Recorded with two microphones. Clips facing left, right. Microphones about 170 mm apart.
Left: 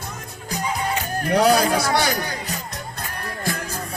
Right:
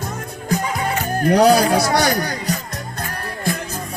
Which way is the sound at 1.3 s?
35° right (ahead or behind).